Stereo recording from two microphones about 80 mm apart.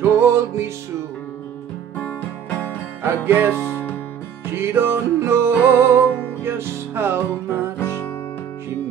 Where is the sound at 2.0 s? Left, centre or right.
Left.